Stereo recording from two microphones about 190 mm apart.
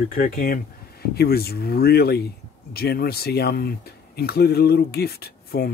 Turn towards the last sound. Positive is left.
turn(degrees=55)  # may be behind; listen again after turning